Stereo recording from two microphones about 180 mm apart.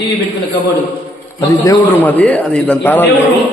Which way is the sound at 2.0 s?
10° left (ahead or behind).